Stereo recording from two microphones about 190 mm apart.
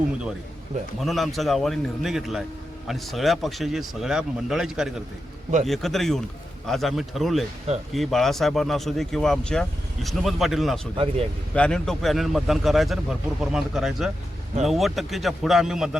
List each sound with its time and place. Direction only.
0.9 s speech: centre (ahead or behind)
10.9 s a man's voice: 30° right (ahead or behind)
11.5 s speech: 5° left (ahead or behind)